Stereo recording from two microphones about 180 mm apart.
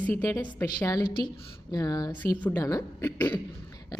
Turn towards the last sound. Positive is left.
turn(degrees=15)  # may be behind; listen again after turning